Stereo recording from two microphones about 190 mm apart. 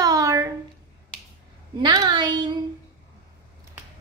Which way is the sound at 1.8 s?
20° right (ahead or behind).